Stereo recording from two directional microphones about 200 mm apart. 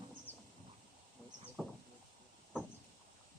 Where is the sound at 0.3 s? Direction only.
10° left (ahead or behind).